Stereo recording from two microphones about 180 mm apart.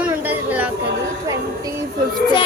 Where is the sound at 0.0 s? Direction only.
10° right (ahead or behind).